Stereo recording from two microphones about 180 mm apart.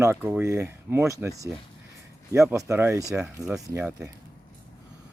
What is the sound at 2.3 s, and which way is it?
Speech, 15° right (ahead or behind).